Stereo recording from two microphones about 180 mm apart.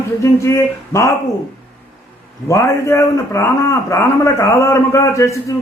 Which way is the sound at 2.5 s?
15° left (ahead or behind).